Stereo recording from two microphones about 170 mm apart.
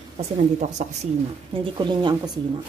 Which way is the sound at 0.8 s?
45° right (ahead or behind).